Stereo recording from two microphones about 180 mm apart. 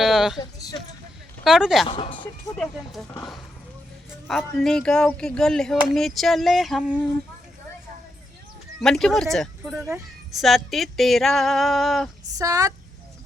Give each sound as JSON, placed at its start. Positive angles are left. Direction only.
{"t": 0.0, "sound": "speech", "side_deg": 0}
{"t": 1.5, "sound": "speech", "side_deg": 0}
{"t": 1.9, "sound": "speech", "side_deg": 30}
{"t": 2.6, "sound": "speech", "side_deg": 0}
{"t": 4.3, "sound": "speech", "side_deg": 0}
{"t": 8.8, "sound": "speech", "side_deg": 5}
{"t": 12.4, "sound": "speech", "side_deg": -20}